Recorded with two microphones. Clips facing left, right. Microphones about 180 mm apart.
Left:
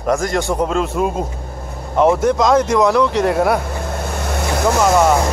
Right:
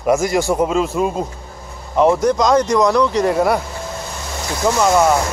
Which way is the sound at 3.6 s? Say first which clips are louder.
Left 4 dB; 55° left (ahead or behind).